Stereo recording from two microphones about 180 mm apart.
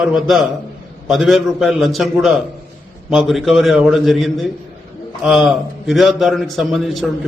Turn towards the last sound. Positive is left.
turn(degrees=0)  # may be behind; listen again after turning